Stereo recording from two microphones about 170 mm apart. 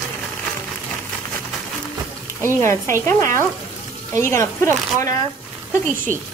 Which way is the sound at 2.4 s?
15° left (ahead or behind).